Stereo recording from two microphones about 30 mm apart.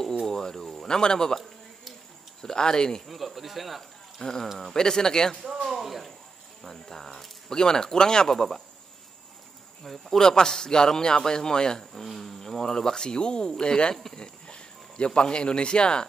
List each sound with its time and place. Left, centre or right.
0.3 s a man's voice: centre
2.4 s a man's voice: left
3.1 s speech: centre
4.2 s a man's voice: centre
5.7 s a sound: centre
6.6 s speech: centre
7.4 s a man's voice: left
9.8 s speech: centre
10.2 s a man's voice: left
12.2 s a man's voice: centre; by 16.1 s left